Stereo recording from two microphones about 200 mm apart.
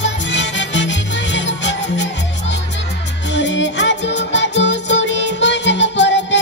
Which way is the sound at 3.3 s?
65° left (ahead or behind).